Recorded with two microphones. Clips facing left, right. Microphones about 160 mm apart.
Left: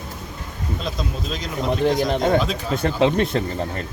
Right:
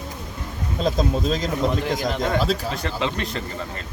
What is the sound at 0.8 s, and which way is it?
Speech, 40° right (ahead or behind).